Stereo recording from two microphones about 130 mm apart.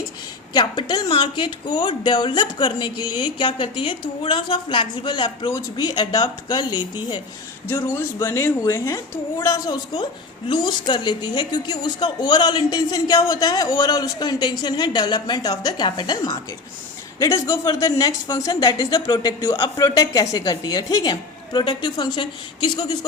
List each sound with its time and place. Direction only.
0.5 s a woman's voice: 35° left (ahead or behind)
7.8 s a woman's voice: 20° left (ahead or behind)